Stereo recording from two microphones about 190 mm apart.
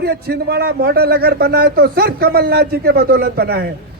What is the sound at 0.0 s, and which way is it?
A man's voice, 55° right (ahead or behind).